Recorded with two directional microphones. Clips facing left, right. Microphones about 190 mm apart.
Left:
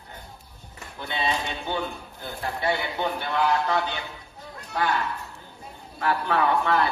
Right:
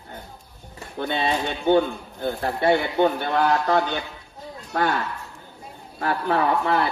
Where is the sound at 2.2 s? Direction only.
55° right (ahead or behind).